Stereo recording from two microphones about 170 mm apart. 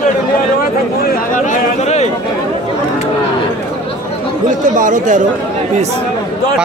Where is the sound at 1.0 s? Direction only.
50° left (ahead or behind).